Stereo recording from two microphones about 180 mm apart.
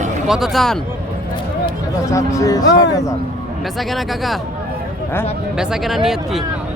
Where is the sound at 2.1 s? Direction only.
15° left (ahead or behind).